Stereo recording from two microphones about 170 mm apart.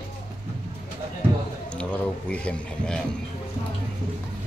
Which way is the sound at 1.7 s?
5° left (ahead or behind).